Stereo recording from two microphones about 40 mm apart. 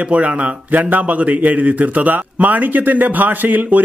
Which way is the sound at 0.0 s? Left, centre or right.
Right.